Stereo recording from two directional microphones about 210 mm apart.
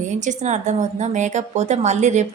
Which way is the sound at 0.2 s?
35° right (ahead or behind).